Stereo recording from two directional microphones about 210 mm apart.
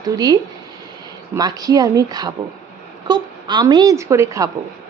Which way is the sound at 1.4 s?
15° right (ahead or behind).